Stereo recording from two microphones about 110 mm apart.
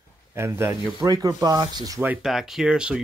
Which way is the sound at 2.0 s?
15° right (ahead or behind).